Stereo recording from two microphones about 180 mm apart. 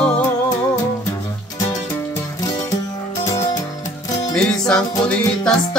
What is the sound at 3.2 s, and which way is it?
Music, 20° left (ahead or behind).